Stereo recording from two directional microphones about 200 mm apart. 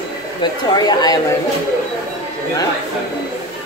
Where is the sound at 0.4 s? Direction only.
20° left (ahead or behind).